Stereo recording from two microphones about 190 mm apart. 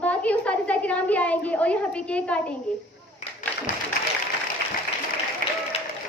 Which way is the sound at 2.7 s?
5° left (ahead or behind).